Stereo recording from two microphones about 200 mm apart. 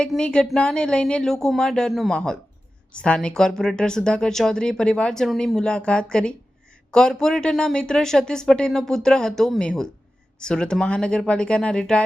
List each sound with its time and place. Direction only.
0.0 s speech: 5° left (ahead or behind)